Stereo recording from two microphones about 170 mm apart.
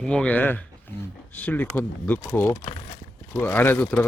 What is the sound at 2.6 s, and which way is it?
Speech, 35° left (ahead or behind).